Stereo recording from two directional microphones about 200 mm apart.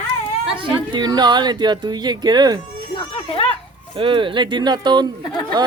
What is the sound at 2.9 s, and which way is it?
Children playing, 25° left (ahead or behind).